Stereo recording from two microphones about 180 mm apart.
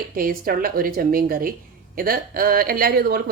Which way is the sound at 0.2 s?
55° right (ahead or behind).